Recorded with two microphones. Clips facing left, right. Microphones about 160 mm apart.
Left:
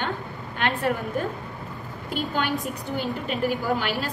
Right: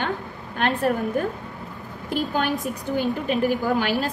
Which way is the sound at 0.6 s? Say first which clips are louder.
Right 3 dB; 40° right (ahead or behind).